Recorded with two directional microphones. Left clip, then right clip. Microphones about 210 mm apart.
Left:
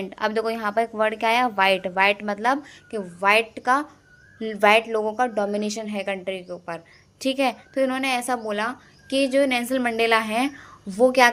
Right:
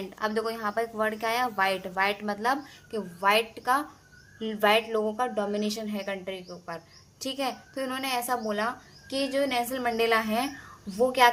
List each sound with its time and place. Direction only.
0.0 s a woman's voice: 30° left (ahead or behind)